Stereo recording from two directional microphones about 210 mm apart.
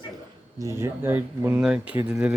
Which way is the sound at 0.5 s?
15° right (ahead or behind).